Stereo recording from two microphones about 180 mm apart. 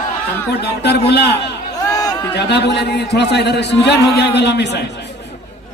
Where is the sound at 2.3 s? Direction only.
70° left (ahead or behind).